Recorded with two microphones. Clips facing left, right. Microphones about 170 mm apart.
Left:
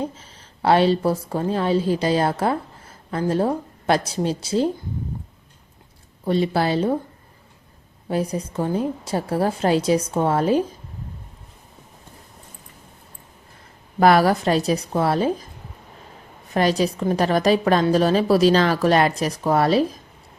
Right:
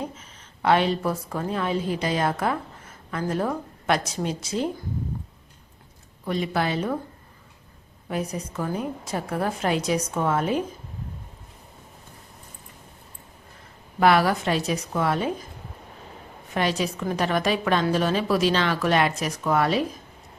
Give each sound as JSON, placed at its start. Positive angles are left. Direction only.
{"t": 0.0, "sound": "a woman's voice", "side_deg": 30}
{"t": 6.2, "sound": "a woman's voice", "side_deg": 30}
{"t": 8.0, "sound": "a woman's voice", "side_deg": 30}
{"t": 14.0, "sound": "a woman's voice", "side_deg": 40}
{"t": 16.6, "sound": "a woman's voice", "side_deg": 35}